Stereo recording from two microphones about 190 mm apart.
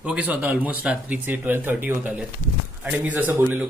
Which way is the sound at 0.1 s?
10° right (ahead or behind).